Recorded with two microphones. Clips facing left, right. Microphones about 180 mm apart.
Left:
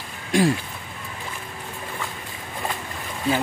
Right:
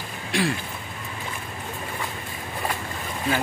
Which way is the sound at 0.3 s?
45° left (ahead or behind).